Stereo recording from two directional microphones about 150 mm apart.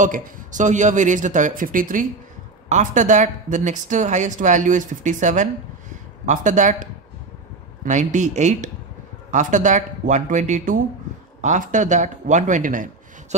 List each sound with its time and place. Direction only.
0.0 s speech: 55° right (ahead or behind)